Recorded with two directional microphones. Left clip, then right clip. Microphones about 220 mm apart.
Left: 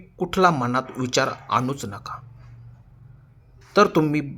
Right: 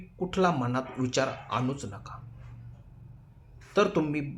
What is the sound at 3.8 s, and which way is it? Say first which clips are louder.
Speech: left 8 dB; 40° left (ahead or behind).